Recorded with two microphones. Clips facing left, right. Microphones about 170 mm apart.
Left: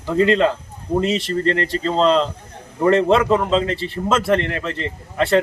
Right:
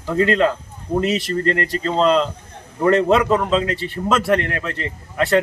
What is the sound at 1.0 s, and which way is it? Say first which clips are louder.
Speech: even; 5° right (ahead or behind).